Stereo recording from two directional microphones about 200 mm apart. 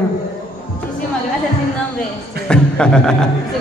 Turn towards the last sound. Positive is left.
turn(degrees=5)  # may be behind; listen again after turning